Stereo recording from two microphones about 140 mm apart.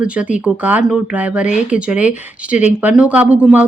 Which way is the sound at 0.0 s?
10° right (ahead or behind).